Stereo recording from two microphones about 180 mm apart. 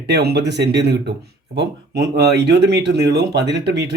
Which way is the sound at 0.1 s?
65° right (ahead or behind).